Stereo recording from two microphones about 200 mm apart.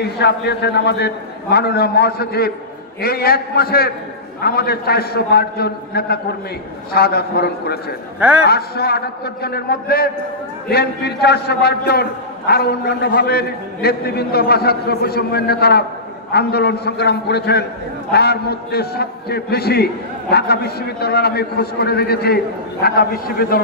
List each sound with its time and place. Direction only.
0.2 s a man's voice: 55° left (ahead or behind)
8.2 s a man's voice: 5° right (ahead or behind)
8.5 s a man's voice: 50° left (ahead or behind)